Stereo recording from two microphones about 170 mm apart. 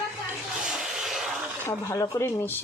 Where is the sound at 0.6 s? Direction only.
5° right (ahead or behind).